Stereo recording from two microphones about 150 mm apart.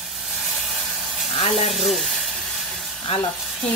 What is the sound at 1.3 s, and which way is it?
Speech, 40° left (ahead or behind).